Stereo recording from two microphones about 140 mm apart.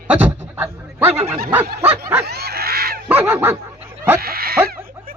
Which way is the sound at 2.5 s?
90° right.